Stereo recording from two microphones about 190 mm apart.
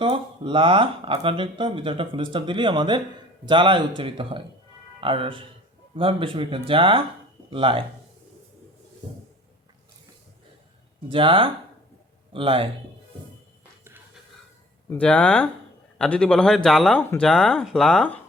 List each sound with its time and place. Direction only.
0.0 s speech: 25° right (ahead or behind)
11.1 s speech: 25° right (ahead or behind)
14.8 s speech: 5° left (ahead or behind)